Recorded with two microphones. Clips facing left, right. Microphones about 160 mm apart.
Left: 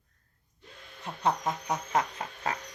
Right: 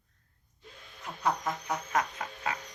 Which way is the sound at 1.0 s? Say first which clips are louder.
Left 2 dB; 25° left (ahead or behind).